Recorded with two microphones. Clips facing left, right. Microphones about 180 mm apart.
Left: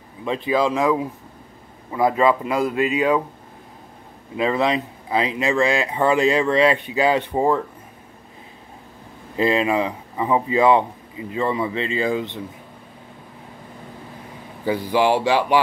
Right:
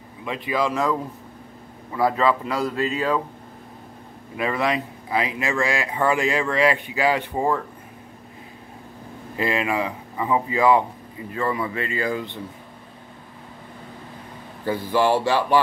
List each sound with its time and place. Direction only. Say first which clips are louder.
0.2 s speech: left 4 dB; 30° left (ahead or behind)
4.4 s speech: left 3 dB; 25° left (ahead or behind)
9.4 s speech: left 4 dB; 25° left (ahead or behind)
14.6 s speech: left 2 dB; 15° left (ahead or behind)